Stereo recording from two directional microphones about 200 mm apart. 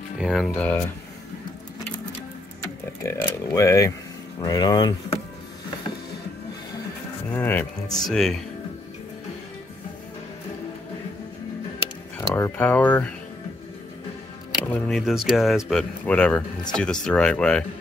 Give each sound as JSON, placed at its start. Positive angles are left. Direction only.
{"t": 0.2, "sound": "speech", "side_deg": 0}
{"t": 3.0, "sound": "speech", "side_deg": 15}
{"t": 7.3, "sound": "speech", "side_deg": 10}
{"t": 12.2, "sound": "speech", "side_deg": 15}
{"t": 14.7, "sound": "speech", "side_deg": 5}